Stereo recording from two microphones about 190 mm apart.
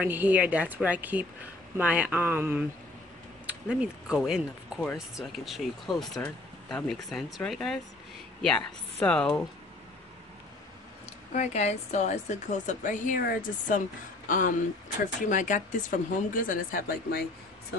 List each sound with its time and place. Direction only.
0.0 s speech: 10° right (ahead or behind)
11.3 s a woman's voice: 35° left (ahead or behind)